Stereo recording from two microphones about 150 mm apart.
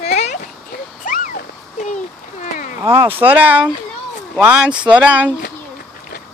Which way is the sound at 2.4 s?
55° left (ahead or behind).